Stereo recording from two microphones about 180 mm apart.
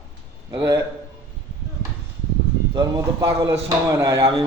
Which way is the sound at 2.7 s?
20° right (ahead or behind).